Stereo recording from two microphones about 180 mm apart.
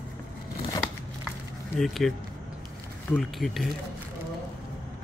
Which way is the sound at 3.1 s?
Centre (ahead or behind).